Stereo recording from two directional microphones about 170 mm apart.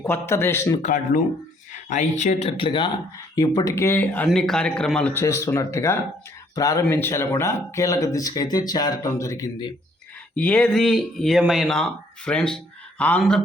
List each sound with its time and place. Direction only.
0.0 s speech: 15° left (ahead or behind)
0.8 s speech: 50° left (ahead or behind); by 5.2 s 5° left (ahead or behind)
5.2 s speech: 20° left (ahead or behind)
10.3 s speech: 5° left (ahead or behind)